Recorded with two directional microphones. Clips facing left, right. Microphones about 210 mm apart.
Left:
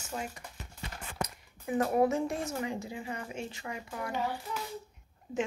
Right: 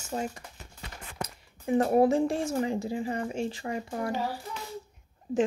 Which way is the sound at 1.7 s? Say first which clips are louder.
Right 5 dB; 30° right (ahead or behind).